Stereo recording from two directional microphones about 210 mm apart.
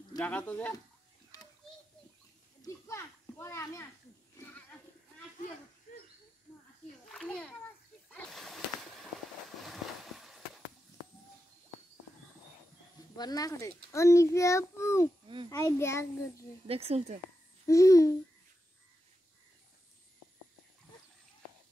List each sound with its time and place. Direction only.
0.2 s a child's voice: 5° left (ahead or behind)
1.6 s a sound: centre (ahead or behind)
2.6 s a child's voice: 15° left (ahead or behind)
7.1 s a child's voice: 5° left (ahead or behind)
8.1 s a sound: centre (ahead or behind)
13.1 s a child's voice: 20° left (ahead or behind)
16.6 s speech: 30° right (ahead or behind)
17.6 s a child's voice: 15° left (ahead or behind)